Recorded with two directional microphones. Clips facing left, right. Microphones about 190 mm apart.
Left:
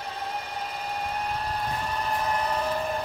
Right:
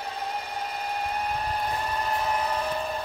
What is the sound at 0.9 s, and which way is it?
Vehicle, 5° right (ahead or behind).